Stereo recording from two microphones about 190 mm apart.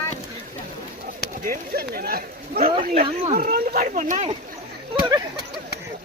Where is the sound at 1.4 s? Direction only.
50° right (ahead or behind).